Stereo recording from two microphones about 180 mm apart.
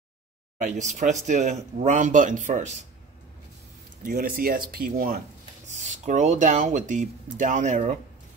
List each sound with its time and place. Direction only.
0.6 s speech: 45° right (ahead or behind)
4.0 s speech: 50° right (ahead or behind)
5.7 s speech: 40° right (ahead or behind)